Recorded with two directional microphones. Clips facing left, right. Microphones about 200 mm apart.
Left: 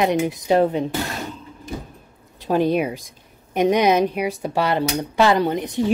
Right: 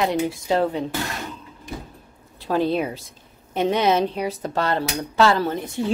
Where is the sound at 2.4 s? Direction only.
15° left (ahead or behind).